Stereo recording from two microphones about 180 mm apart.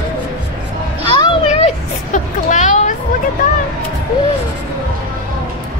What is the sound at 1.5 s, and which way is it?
Speech, 40° left (ahead or behind).